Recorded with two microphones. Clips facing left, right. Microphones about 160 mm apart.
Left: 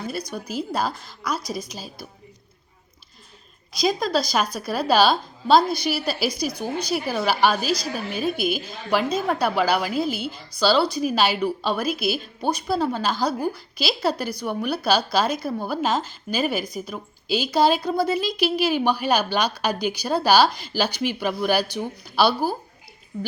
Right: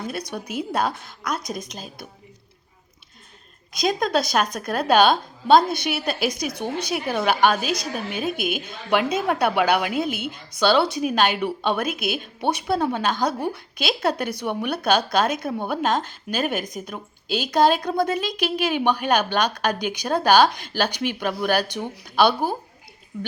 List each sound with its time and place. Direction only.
0.1 s a woman's voice: centre (ahead or behind)
3.7 s a woman's voice: centre (ahead or behind)
6.5 s speech: 25° right (ahead or behind)
6.8 s a woman's voice: 5° left (ahead or behind)